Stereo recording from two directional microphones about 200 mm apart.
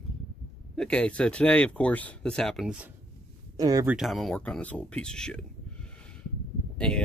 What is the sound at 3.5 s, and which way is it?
Speech, 20° right (ahead or behind).